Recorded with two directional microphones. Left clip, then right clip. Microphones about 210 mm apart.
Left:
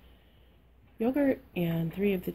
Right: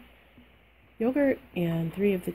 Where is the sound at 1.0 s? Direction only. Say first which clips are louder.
Right 3 dB; 15° right (ahead or behind).